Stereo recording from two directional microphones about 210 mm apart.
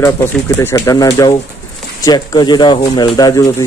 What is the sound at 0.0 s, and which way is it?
Speech, 10° left (ahead or behind).